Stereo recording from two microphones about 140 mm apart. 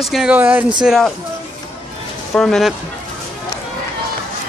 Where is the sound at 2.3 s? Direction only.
5° left (ahead or behind).